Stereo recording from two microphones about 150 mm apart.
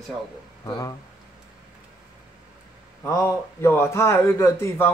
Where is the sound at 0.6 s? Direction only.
25° left (ahead or behind).